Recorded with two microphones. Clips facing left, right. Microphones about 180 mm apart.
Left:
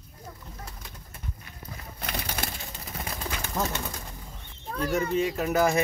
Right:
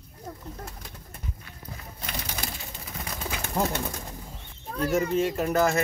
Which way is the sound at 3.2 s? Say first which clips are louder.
Right 3 dB; 10° right (ahead or behind).